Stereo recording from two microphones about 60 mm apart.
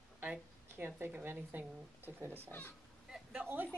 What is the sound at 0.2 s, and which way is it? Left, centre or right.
A woman's voice, right.